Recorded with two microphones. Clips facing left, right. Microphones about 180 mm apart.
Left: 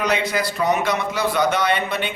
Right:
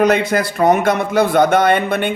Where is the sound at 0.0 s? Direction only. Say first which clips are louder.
Right 7 dB; 50° right (ahead or behind).